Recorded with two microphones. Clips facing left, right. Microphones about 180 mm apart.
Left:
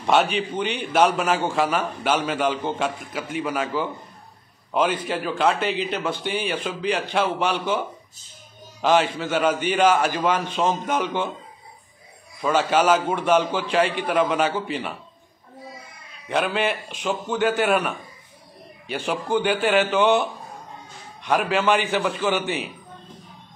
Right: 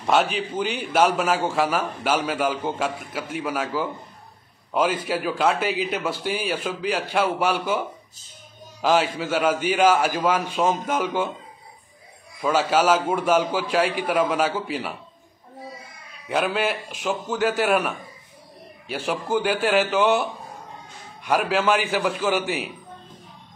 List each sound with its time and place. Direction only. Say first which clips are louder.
0.0 s a man's voice: left 1 dB; centre (ahead or behind)
8.8 s a man's voice: left 1 dB; 5° right (ahead or behind)
12.4 s a man's voice: even; 5° right (ahead or behind)
16.3 s a man's voice: even; 5° right (ahead or behind)